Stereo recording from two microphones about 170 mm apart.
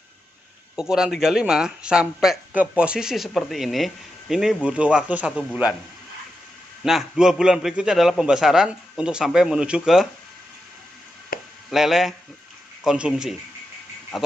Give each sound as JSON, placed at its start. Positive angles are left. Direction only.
{"t": 0.7, "sound": "speech", "side_deg": -5}
{"t": 6.8, "sound": "speech", "side_deg": 0}
{"t": 11.3, "sound": "chop", "side_deg": 60}
{"t": 11.7, "sound": "speech", "side_deg": 0}